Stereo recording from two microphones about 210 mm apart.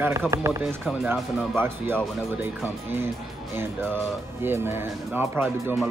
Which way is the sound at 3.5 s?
10° right (ahead or behind).